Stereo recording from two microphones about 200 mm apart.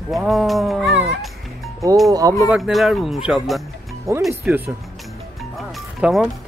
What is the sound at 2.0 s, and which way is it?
Speech, 15° right (ahead or behind).